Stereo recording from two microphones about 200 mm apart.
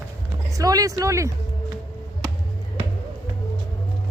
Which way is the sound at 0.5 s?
15° right (ahead or behind).